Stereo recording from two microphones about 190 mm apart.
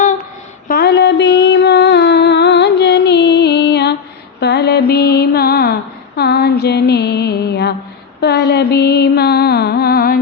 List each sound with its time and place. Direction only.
0.7 s a sound: 60° left (ahead or behind)
4.4 s mantra: 60° left (ahead or behind)
6.1 s music: 55° left (ahead or behind)